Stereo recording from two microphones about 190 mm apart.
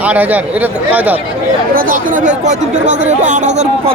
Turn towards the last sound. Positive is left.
turn(degrees=-40)  # may be behind; listen again after turning